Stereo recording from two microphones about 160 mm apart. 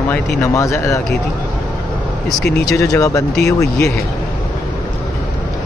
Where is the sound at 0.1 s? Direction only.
15° left (ahead or behind).